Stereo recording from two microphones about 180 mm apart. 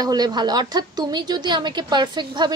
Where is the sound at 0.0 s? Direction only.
20° right (ahead or behind).